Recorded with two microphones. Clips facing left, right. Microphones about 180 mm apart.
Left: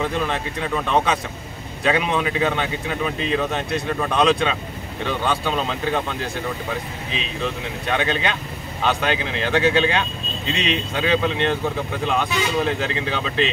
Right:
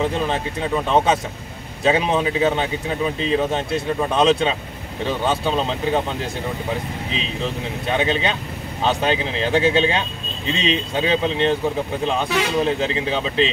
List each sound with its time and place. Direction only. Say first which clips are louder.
0.0 s speech: right 2 dB; 30° right (ahead or behind)
7.9 s speech: right 2 dB; 30° right (ahead or behind)
12.6 s speech: right 2 dB; 30° right (ahead or behind)